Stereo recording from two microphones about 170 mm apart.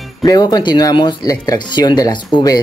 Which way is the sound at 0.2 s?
20° left (ahead or behind).